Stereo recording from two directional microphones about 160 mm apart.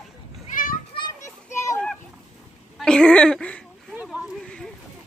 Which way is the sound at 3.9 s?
5° right (ahead or behind).